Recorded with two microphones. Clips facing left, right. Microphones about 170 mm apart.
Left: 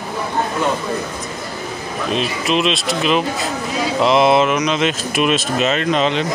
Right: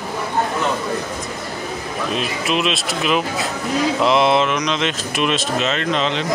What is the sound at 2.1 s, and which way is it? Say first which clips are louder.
Speech: left 3 dB; 5° right (ahead or behind).